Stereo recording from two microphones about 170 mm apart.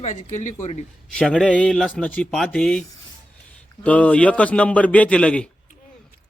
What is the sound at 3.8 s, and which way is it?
A man's voice, 10° left (ahead or behind).